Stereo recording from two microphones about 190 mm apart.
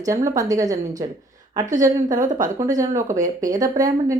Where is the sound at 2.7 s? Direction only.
15° right (ahead or behind).